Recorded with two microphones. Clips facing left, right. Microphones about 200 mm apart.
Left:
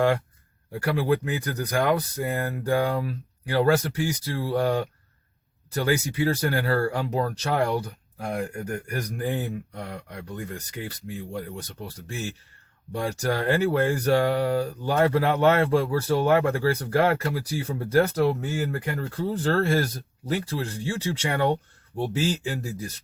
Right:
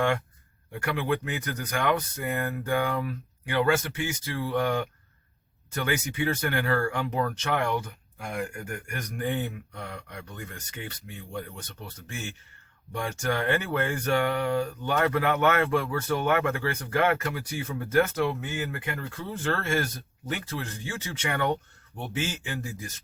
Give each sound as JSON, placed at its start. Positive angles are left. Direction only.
{"t": 0.7, "sound": "speech", "side_deg": 35}